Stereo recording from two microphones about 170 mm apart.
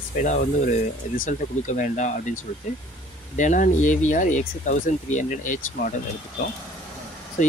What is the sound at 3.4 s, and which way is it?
Speech, 50° left (ahead or behind).